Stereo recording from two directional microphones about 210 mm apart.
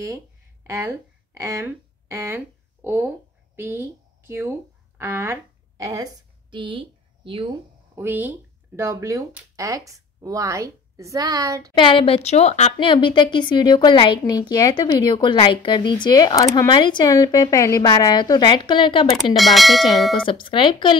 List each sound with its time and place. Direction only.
0.7 s speech: 15° right (ahead or behind)
7.9 s speech: 10° right (ahead or behind)
11.7 s speech: 25° left (ahead or behind)
19.3 s speech: centre (ahead or behind)
20.2 s speech: 25° left (ahead or behind)